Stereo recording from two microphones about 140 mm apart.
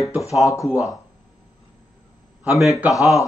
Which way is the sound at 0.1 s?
20° left (ahead or behind).